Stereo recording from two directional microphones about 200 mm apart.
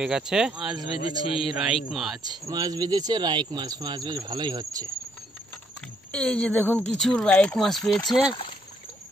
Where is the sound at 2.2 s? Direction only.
20° right (ahead or behind).